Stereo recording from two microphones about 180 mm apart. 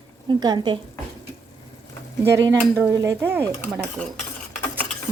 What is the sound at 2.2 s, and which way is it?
Speech, 15° right (ahead or behind).